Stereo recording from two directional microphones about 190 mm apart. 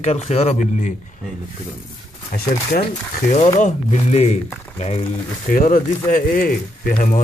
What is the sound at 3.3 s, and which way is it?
A man's voice, 35° left (ahead or behind).